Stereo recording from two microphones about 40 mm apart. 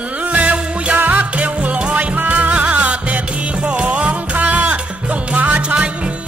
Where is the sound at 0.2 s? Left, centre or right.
Right.